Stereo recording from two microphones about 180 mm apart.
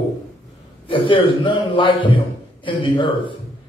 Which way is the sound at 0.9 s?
30° left (ahead or behind).